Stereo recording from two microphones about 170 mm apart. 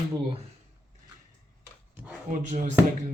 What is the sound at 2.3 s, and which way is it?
Speech, 50° right (ahead or behind).